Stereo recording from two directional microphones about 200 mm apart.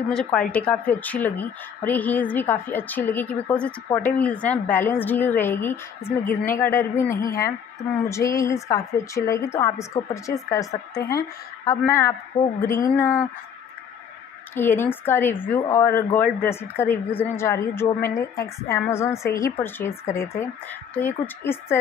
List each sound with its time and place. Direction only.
0.1 s a woman's voice: 5° left (ahead or behind)
14.5 s a woman's voice: 10° left (ahead or behind)